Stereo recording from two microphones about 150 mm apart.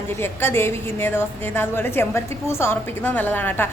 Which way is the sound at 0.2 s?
15° left (ahead or behind).